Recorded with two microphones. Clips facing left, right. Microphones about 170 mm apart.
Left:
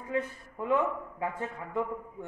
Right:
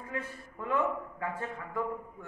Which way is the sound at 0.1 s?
20° left (ahead or behind).